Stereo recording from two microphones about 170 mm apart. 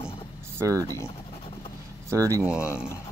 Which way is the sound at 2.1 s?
20° right (ahead or behind).